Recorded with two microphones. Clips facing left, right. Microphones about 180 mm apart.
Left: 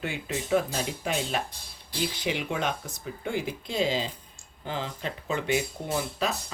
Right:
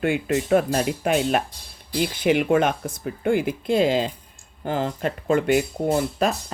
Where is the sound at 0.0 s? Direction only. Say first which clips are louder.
Right 10 dB; 60° right (ahead or behind).